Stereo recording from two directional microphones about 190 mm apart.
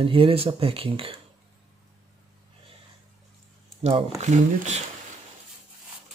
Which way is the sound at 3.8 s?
35° right (ahead or behind).